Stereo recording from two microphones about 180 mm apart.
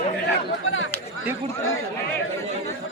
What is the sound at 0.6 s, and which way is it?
Speech, 90° left.